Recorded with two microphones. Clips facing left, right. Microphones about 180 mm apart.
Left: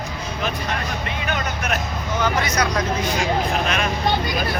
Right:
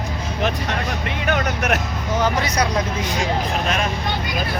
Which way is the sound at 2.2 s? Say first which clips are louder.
Even; 35° right (ahead or behind).